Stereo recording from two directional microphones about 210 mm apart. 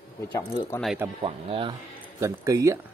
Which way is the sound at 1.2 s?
25° right (ahead or behind).